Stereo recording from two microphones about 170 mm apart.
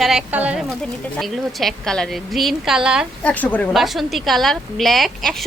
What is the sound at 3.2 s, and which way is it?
A woman's voice, 10° left (ahead or behind).